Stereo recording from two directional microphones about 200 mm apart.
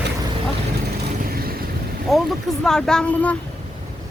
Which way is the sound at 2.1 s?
Centre (ahead or behind).